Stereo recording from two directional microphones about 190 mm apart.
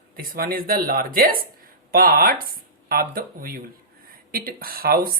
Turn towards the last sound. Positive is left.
turn(degrees=-50)  # may be behind; listen again after turning